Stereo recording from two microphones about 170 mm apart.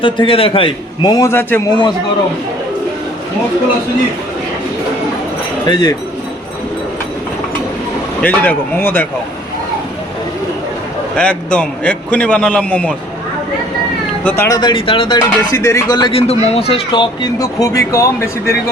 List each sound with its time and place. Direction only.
0.0 s speech: 30° left (ahead or behind); by 1.7 s 15° left (ahead or behind)
5.6 s speech: 25° left (ahead or behind)
8.2 s a man's voice: 10° left (ahead or behind)
11.2 s a man's voice: 5° left (ahead or behind)
14.3 s speech: 15° left (ahead or behind)